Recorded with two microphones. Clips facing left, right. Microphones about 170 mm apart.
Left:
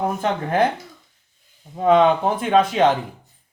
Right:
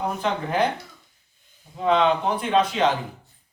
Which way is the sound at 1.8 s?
45° left (ahead or behind).